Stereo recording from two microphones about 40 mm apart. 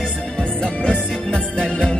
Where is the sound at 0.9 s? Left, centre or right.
Left.